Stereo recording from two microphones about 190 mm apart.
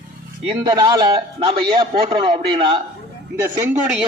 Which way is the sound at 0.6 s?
20° right (ahead or behind).